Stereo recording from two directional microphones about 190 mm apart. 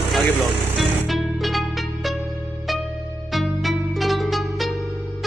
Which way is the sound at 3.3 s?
Centre (ahead or behind).